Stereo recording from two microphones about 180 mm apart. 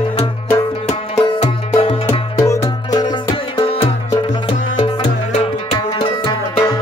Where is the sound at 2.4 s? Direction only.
15° left (ahead or behind).